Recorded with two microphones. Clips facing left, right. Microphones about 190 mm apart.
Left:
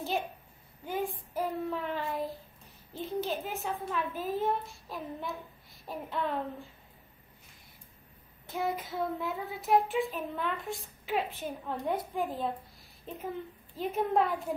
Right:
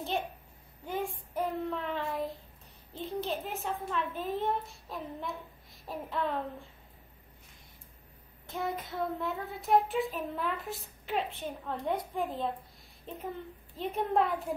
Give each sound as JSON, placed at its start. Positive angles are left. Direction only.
{"t": 0.8, "sound": "child singing", "side_deg": 0}
{"t": 8.5, "sound": "child singing", "side_deg": 0}